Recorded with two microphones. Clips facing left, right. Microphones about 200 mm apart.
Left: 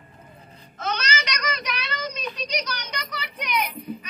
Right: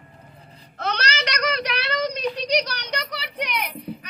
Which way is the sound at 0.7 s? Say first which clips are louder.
Right 1 dB; 65° right (ahead or behind).